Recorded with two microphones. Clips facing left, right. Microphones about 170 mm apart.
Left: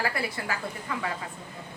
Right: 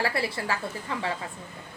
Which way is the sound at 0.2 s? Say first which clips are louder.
Right 3 dB; 30° right (ahead or behind).